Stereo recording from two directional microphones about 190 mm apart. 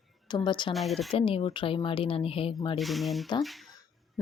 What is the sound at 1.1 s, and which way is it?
A woman's voice, 30° left (ahead or behind).